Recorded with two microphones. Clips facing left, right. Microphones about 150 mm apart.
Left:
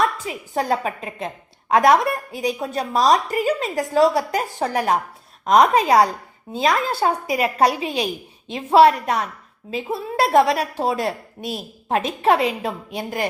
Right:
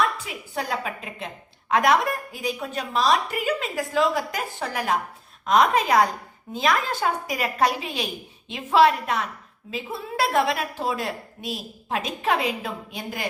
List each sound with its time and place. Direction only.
0.3 s a woman's voice: 40° left (ahead or behind)